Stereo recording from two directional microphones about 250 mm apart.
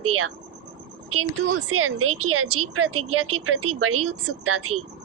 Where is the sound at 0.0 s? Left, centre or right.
Right.